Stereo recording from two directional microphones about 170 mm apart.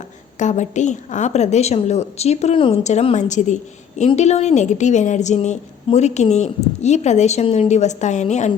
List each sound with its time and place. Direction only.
0.3 s a woman's voice: 45° left (ahead or behind)